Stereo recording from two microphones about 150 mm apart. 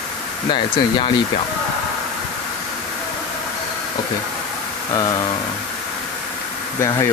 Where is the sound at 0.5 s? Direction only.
30° left (ahead or behind).